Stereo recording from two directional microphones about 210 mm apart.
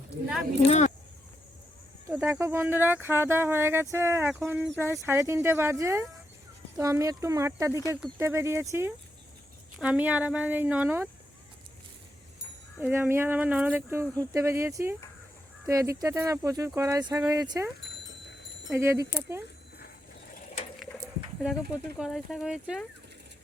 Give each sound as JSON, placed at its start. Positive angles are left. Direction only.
{"t": 2.0, "sound": "speech", "side_deg": -10}
{"t": 12.8, "sound": "speech", "side_deg": -10}
{"t": 18.7, "sound": "speech", "side_deg": -10}
{"t": 21.4, "sound": "speech", "side_deg": 0}